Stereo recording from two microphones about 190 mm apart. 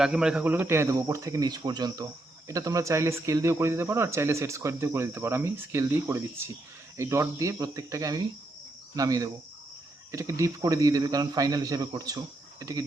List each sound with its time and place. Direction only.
0.0 s a man's voice: 5° right (ahead or behind)